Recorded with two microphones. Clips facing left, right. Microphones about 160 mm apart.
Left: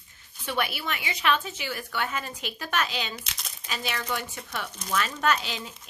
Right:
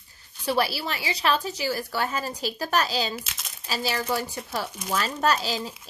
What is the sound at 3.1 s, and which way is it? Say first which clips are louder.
Speech: right 4 dB; 5° right (ahead or behind).